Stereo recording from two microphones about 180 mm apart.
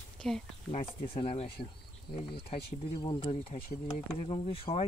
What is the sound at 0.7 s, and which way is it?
Speech, 35° left (ahead or behind).